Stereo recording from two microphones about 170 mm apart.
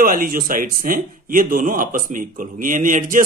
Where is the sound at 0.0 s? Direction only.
55° right (ahead or behind).